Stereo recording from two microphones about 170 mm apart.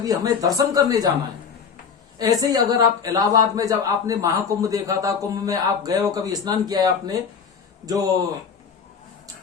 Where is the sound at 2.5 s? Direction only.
20° right (ahead or behind).